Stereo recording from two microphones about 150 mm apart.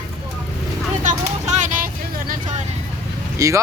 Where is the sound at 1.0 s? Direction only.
55° right (ahead or behind).